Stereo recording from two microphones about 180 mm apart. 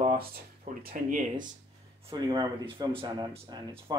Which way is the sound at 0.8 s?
50° right (ahead or behind).